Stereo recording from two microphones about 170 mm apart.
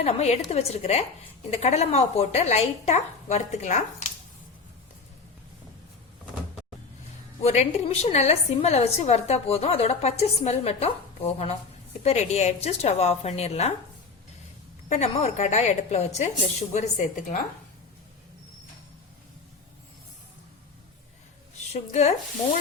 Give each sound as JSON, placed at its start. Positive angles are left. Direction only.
{"t": 0.0, "sound": "a woman's voice", "side_deg": 40}
{"t": 7.4, "sound": "a woman's voice", "side_deg": 40}
{"t": 14.8, "sound": "a woman's voice", "side_deg": 40}
{"t": 21.7, "sound": "a woman's voice", "side_deg": 40}